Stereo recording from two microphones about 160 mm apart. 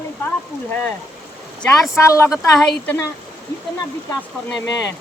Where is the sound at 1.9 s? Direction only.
20° left (ahead or behind).